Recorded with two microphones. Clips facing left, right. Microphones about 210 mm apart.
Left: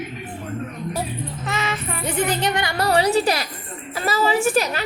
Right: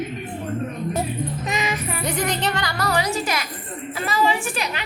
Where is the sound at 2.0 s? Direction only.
5° left (ahead or behind); by 4.8 s 40° left (ahead or behind).